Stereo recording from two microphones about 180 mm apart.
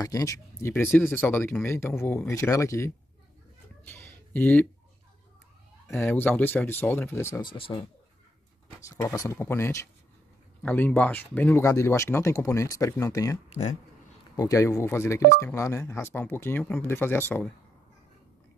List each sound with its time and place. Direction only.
0.0 s speech: 20° left (ahead or behind)
3.9 s a sound: 10° left (ahead or behind)
5.9 s speech: 15° left (ahead or behind)
7.4 s speech: 30° left (ahead or behind)
8.8 s speech: 15° left (ahead or behind)
13.5 s speech: 40° left (ahead or behind)
14.3 s speech: 20° left (ahead or behind)